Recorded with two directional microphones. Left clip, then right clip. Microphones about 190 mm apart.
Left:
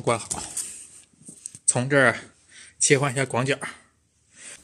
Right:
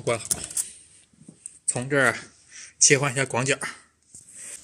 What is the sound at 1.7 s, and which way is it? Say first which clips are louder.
Speech: left 3 dB; 15° left (ahead or behind).